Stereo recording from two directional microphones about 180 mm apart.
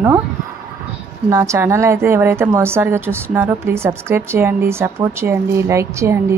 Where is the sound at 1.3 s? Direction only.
15° right (ahead or behind).